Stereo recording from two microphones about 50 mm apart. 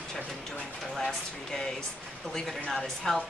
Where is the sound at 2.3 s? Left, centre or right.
Centre.